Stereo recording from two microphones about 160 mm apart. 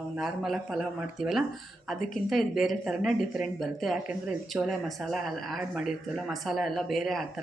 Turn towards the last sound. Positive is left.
turn(degrees=0)  # may be behind; listen again after turning